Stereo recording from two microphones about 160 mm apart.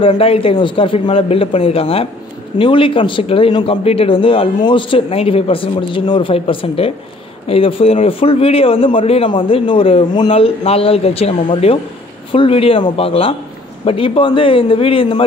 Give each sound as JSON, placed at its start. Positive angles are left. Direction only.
{"t": 0.1, "sound": "speech", "side_deg": 35}